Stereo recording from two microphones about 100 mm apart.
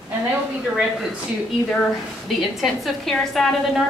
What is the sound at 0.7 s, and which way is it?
Speech, centre (ahead or behind).